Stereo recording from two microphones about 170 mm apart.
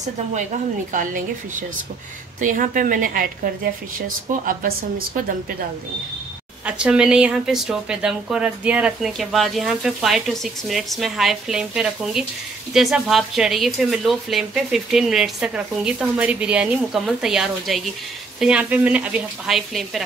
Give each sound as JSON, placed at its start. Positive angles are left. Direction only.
{"t": 0.9, "sound": "a woman's voice", "side_deg": -50}
{"t": 6.6, "sound": "a woman's voice", "side_deg": -5}